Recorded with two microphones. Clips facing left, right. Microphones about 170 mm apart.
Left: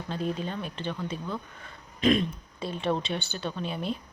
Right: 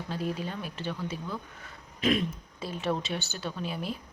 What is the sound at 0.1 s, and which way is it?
Speech, 10° right (ahead or behind).